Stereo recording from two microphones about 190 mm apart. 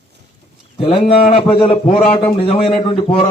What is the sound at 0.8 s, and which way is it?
A man's voice, 30° left (ahead or behind).